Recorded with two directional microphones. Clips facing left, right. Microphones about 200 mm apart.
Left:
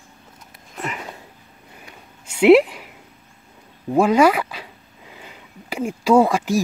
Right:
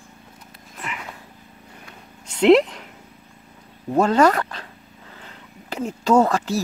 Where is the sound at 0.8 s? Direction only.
40° left (ahead or behind).